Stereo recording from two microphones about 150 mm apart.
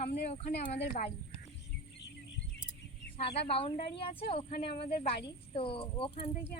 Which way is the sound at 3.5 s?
40° left (ahead or behind).